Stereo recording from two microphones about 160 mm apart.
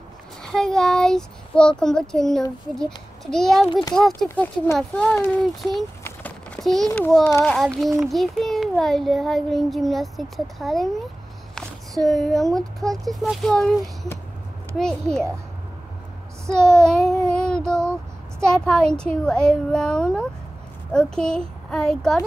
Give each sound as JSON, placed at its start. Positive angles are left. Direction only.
{"t": 0.4, "sound": "a child's voice", "side_deg": 5}
{"t": 6.0, "sound": "a sound", "side_deg": 10}
{"t": 7.0, "sound": "a child's voice", "side_deg": 0}
{"t": 12.1, "sound": "a child's voice", "side_deg": 0}
{"t": 16.4, "sound": "child singing", "side_deg": 5}
{"t": 18.4, "sound": "a child's voice", "side_deg": 5}